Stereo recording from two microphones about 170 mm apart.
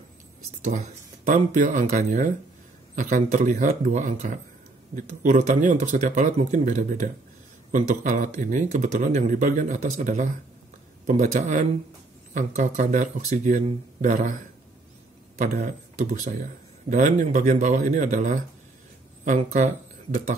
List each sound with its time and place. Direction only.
0.7 s speech: 45° right (ahead or behind)